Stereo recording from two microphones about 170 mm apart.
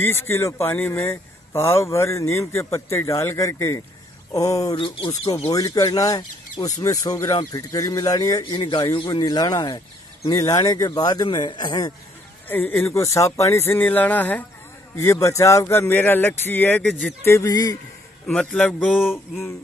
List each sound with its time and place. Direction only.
0.0 s speech: 15° left (ahead or behind); by 5.3 s 30° left (ahead or behind)
5.5 s speech: 20° left (ahead or behind)
12.4 s speech: 10° left (ahead or behind)
18.2 s a man's voice: 5° left (ahead or behind)